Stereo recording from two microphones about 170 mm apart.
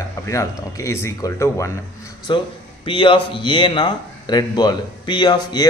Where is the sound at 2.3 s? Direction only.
25° left (ahead or behind).